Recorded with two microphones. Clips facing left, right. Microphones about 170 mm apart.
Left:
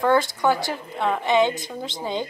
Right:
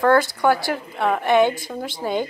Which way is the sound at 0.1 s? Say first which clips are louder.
Right 3 dB; 20° left (ahead or behind).